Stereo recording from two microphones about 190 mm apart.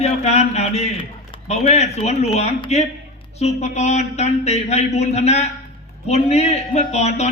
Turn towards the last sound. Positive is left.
turn(degrees=35)  # may be behind; listen again after turning